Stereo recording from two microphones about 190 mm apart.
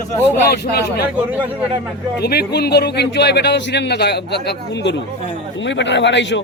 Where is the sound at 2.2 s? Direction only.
55° left (ahead or behind).